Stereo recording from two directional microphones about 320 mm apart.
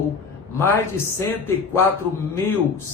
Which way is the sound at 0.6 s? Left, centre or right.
Centre.